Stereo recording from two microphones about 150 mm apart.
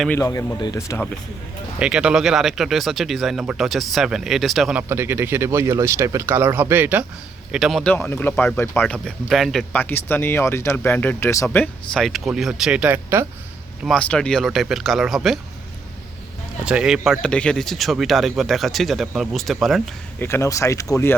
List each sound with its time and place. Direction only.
0.1 s speech: 20° left (ahead or behind)
1.8 s speech: 5° right (ahead or behind)
4.8 s speech: 15° right (ahead or behind)
7.5 s speech: centre (ahead or behind)
7.9 s speech: 10° left (ahead or behind)
9.7 s speech: 15° left (ahead or behind); by 13.2 s 15° right (ahead or behind)
13.8 s speech: 5° left (ahead or behind)
16.6 s speech: 5° right (ahead or behind)
20.1 s speech: 15° left (ahead or behind)